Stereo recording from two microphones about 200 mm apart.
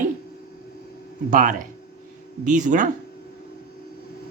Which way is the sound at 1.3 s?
40° right (ahead or behind).